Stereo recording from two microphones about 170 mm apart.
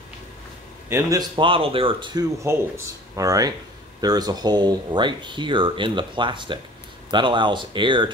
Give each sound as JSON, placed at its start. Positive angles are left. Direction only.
{"t": 0.8, "sound": "a man's voice", "side_deg": -15}
{"t": 1.3, "sound": "speech", "side_deg": -30}